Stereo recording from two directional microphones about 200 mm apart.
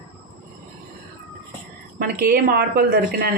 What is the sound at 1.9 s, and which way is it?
A woman's voice, 50° right (ahead or behind).